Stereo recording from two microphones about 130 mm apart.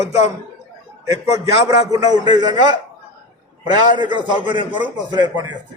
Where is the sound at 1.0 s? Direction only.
30° right (ahead or behind).